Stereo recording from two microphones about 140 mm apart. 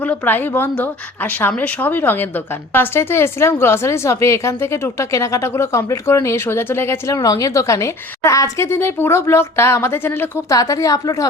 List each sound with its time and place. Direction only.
0.0 s a woman's voice: 10° left (ahead or behind)